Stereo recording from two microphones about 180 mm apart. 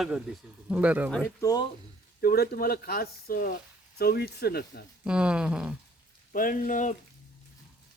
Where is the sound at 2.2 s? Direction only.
60° left (ahead or behind).